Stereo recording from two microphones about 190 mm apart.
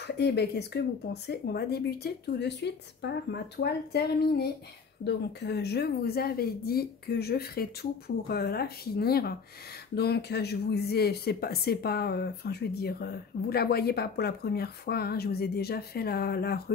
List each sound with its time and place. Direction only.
0.0 s speech: 60° left (ahead or behind)